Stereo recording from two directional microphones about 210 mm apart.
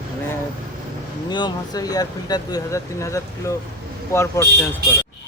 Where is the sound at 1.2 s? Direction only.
20° left (ahead or behind).